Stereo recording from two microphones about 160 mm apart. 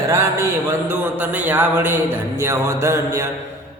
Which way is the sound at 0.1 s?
15° right (ahead or behind).